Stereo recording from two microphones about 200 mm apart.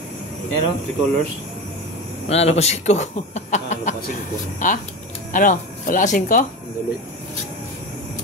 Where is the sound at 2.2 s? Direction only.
30° left (ahead or behind).